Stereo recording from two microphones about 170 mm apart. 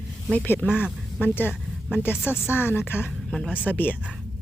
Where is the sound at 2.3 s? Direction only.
15° left (ahead or behind).